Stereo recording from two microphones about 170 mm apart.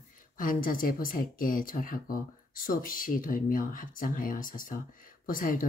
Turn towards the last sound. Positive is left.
turn(degrees=55)  # may be behind; listen again after turning